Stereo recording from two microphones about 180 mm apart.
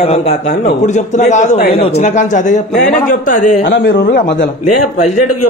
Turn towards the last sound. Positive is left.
turn(degrees=75)  # may be behind; listen again after turning